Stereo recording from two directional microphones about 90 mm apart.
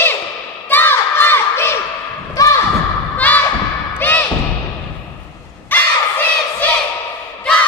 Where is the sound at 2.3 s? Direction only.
40° left (ahead or behind).